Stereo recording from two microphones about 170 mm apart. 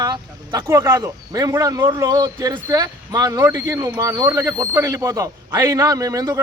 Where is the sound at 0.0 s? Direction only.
20° right (ahead or behind).